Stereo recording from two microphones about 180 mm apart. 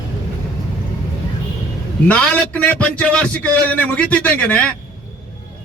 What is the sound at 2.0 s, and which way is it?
A man's voice, 5° left (ahead or behind).